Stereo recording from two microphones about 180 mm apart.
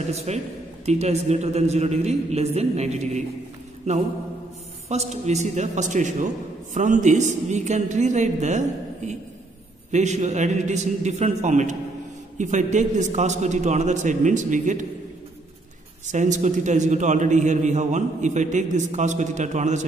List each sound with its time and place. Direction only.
0.1 s a man's voice: 35° right (ahead or behind)
4.8 s a man's voice: 35° right (ahead or behind)
16.1 s a man's voice: 40° right (ahead or behind)